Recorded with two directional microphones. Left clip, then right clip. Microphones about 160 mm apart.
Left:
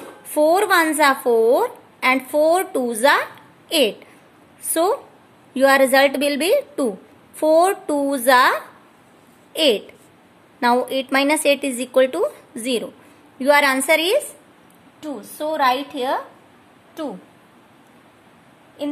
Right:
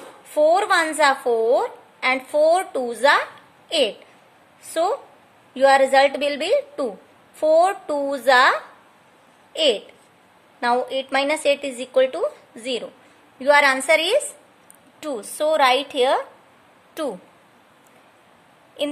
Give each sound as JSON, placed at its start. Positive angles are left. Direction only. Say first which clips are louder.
{"t": 0.3, "sound": "a woman's voice", "louder": "left 1 dB", "side_deg": 20}
{"t": 15.0, "sound": "a woman's voice", "louder": "right 4 dB", "side_deg": -65}